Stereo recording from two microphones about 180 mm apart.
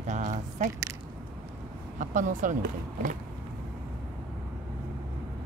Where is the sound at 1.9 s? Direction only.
45° right (ahead or behind).